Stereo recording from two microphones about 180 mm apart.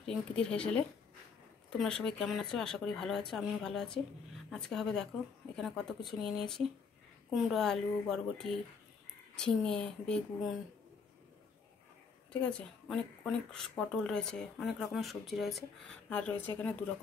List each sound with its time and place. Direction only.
0.0 s a woman's voice: 5° left (ahead or behind)
12.3 s a woman's voice: 5° left (ahead or behind)